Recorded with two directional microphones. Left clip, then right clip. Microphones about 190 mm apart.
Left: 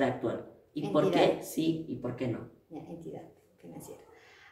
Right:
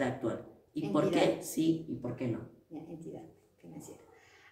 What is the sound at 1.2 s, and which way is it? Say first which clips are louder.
A woman's voice: left 2 dB; 10° right (ahead or behind).